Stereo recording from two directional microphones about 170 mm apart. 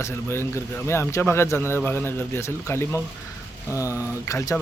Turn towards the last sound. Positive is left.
turn(degrees=20)  # may be behind; listen again after turning